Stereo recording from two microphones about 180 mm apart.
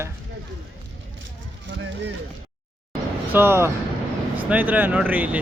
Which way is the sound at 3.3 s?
15° right (ahead or behind).